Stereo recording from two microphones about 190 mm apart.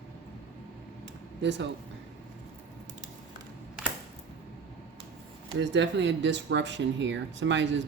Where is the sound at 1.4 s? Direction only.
65° right (ahead or behind).